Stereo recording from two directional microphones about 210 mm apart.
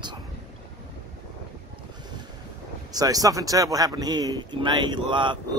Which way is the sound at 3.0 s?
15° right (ahead or behind).